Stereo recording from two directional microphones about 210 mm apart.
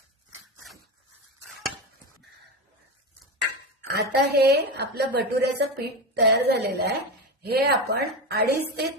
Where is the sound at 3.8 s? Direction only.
50° right (ahead or behind).